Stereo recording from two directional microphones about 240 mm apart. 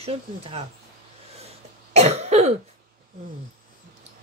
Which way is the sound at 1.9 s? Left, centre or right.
Right.